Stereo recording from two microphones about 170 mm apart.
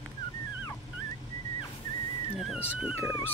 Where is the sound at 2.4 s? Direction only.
5° right (ahead or behind).